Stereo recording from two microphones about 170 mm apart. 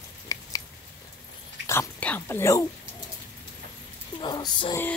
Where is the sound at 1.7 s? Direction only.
10° left (ahead or behind).